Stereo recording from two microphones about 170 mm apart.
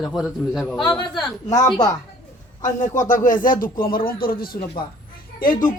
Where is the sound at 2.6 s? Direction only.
50° left (ahead or behind).